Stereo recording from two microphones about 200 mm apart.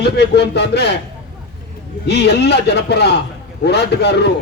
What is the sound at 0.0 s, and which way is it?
Speech, 55° left (ahead or behind).